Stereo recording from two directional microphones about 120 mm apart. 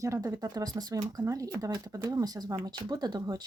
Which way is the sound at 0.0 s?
25° right (ahead or behind).